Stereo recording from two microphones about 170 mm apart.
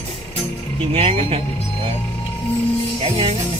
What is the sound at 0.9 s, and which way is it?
Speech, 35° right (ahead or behind).